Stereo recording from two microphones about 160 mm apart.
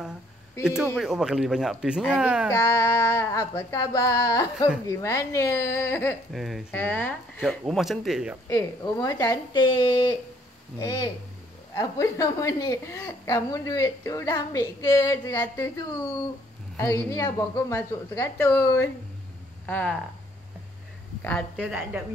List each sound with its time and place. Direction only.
0.9 s speech: centre (ahead or behind)
2.5 s a woman's voice: 15° left (ahead or behind)
6.3 s speech: centre (ahead or behind)
6.7 s a woman's voice: 10° left (ahead or behind)
7.4 s speech: centre (ahead or behind)
8.5 s a woman's voice: 20° left (ahead or behind)
10.8 s a woman's voice: 20° left (ahead or behind)
16.7 s a woman's voice: 20° left (ahead or behind)
21.2 s a woman's voice: 10° left (ahead or behind)
21.5 s a woman's voice: 10° right (ahead or behind)